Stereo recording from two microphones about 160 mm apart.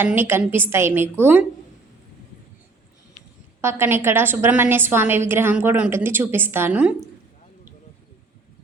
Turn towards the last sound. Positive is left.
turn(degrees=-10)  # may be behind; listen again after turning